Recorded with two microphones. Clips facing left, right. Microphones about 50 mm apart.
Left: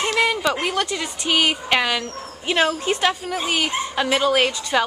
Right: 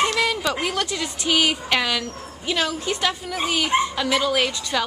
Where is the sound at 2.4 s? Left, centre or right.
Left.